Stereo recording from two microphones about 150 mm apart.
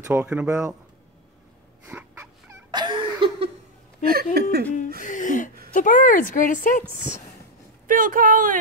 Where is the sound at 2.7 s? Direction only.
30° right (ahead or behind).